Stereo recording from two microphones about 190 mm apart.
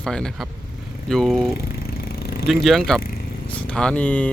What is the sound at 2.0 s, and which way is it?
Vehicle, 55° left (ahead or behind).